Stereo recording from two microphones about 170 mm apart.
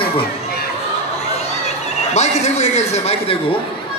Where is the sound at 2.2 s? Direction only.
40° left (ahead or behind).